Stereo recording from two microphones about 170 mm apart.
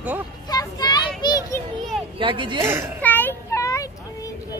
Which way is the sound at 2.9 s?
10° left (ahead or behind).